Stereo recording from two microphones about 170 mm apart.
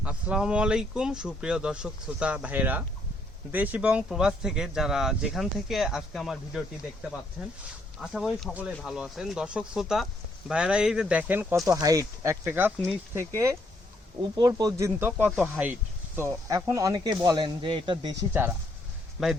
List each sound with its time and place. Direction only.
0.0 s speech: 5° right (ahead or behind)
11.6 s speech: 20° right (ahead or behind)
18.2 s speech: 10° right (ahead or behind)
19.2 s speech: centre (ahead or behind)